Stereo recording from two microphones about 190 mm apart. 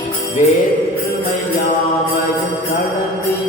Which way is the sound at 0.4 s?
35° left (ahead or behind).